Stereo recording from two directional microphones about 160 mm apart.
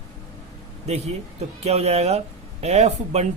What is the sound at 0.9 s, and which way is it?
A man's voice, 40° right (ahead or behind).